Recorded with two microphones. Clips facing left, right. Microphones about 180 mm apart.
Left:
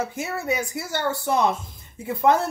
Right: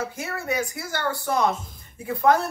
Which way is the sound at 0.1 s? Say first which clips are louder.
Left 2 dB; 25° left (ahead or behind).